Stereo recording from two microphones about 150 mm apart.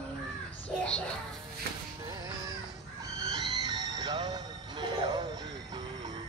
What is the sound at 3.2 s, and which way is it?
Music, 25° right (ahead or behind).